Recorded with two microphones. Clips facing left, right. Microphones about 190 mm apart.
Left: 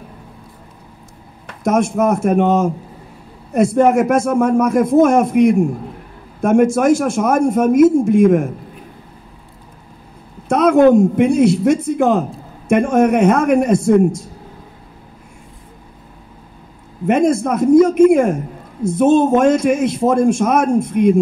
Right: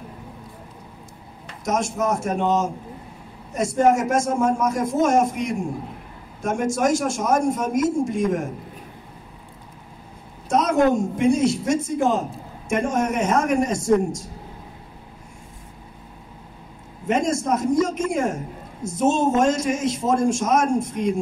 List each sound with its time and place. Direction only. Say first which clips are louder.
1.5 s a man's voice: left 8 dB; 55° left (ahead or behind)
10.5 s a man's voice: left 8 dB; 60° left (ahead or behind)
17.1 s a man's voice: left 7 dB; 60° left (ahead or behind)